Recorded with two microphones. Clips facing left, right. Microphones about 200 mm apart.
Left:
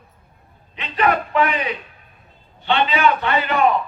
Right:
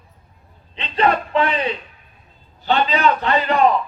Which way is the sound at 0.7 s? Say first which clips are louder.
Right 1 dB; 30° right (ahead or behind).